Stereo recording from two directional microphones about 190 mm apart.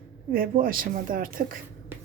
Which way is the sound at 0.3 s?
50° right (ahead or behind).